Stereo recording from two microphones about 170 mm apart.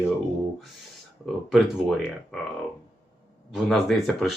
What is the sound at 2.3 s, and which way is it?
Speech, centre (ahead or behind).